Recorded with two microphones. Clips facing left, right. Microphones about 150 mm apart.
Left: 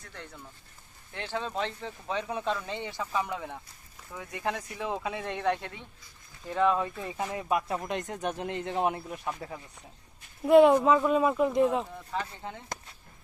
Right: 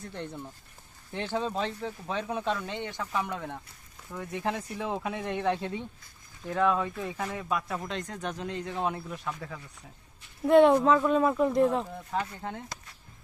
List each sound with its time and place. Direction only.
0.0 s speech: 20° right (ahead or behind); by 2.4 s centre (ahead or behind)
2.7 s speech: 10° left (ahead or behind)
7.2 s speech: 15° left (ahead or behind)
10.4 s speech: 5° left (ahead or behind)